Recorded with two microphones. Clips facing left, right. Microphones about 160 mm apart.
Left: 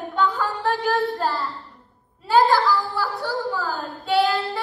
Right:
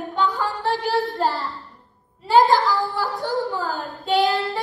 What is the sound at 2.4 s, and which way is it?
Speech, 15° right (ahead or behind).